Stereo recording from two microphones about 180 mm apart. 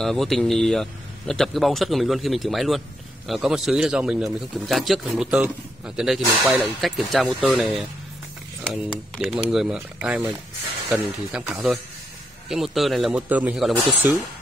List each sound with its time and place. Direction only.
0.0 s speech: centre (ahead or behind)
9.1 s speech: centre (ahead or behind)